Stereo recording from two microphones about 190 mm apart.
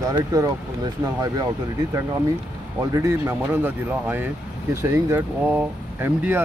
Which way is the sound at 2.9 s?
15° right (ahead or behind).